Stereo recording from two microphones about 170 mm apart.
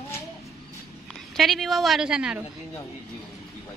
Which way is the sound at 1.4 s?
Centre (ahead or behind).